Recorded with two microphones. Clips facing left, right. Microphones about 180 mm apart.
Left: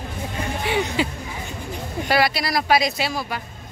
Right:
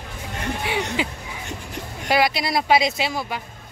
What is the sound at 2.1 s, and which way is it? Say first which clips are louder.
Speech: right 1 dB; 20° right (ahead or behind).